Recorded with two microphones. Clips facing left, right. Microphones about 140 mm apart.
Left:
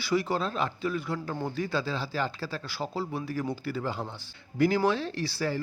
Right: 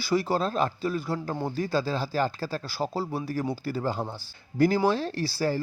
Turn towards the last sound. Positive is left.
turn(degrees=-35)  # may be behind; listen again after turning